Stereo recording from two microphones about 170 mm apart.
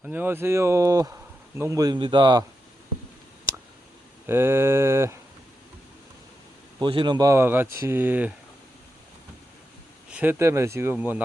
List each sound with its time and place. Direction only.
0.0 s speech: 10° right (ahead or behind); by 2.4 s 25° right (ahead or behind)
4.3 s speech: 15° right (ahead or behind)
6.7 s speech: 30° right (ahead or behind); by 8.3 s 10° right (ahead or behind)
10.1 s speech: 10° right (ahead or behind)